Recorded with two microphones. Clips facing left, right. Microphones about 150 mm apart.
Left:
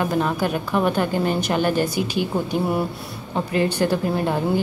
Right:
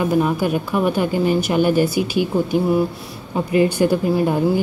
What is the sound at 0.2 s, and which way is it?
A woman's voice, 10° right (ahead or behind).